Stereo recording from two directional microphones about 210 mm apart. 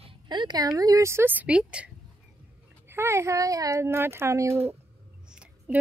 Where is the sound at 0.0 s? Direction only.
20° right (ahead or behind); by 1.9 s 5° right (ahead or behind).